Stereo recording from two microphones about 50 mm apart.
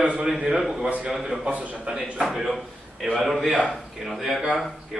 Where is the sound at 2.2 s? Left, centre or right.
Centre.